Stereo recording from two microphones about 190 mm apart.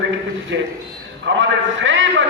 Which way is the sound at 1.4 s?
80° right.